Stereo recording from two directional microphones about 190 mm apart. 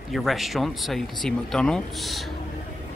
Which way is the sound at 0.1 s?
Centre (ahead or behind).